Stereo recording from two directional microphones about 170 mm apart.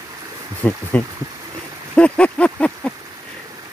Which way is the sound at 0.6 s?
10° left (ahead or behind).